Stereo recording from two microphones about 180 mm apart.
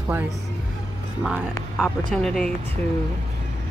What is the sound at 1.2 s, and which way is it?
Speech, 5° right (ahead or behind).